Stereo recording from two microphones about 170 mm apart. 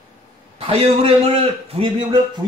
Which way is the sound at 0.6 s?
35° right (ahead or behind).